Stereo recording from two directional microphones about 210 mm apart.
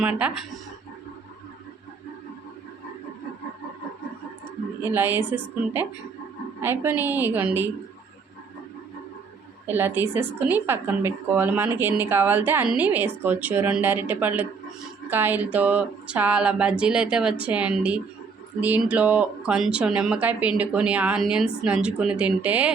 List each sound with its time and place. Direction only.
0.0 s speech: 5° right (ahead or behind)
4.8 s a woman's voice: 10° right (ahead or behind)
6.6 s a woman's voice: 10° right (ahead or behind)
9.6 s a woman's voice: 10° right (ahead or behind)